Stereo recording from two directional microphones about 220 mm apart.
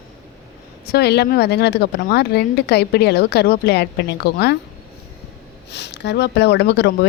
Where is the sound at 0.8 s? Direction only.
45° left (ahead or behind).